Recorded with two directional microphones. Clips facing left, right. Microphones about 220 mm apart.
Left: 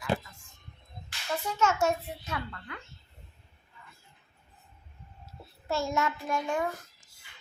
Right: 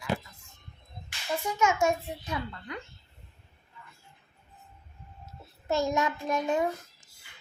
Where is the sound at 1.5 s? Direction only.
10° right (ahead or behind).